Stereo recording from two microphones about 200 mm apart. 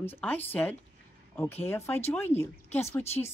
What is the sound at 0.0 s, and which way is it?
Speech, 10° left (ahead or behind).